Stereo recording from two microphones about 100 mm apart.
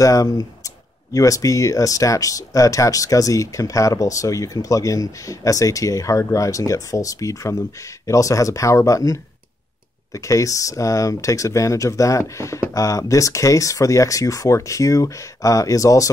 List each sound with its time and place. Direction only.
0.0 s speech: 35° left (ahead or behind)